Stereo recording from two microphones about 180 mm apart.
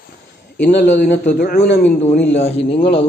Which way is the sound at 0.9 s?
70° left (ahead or behind).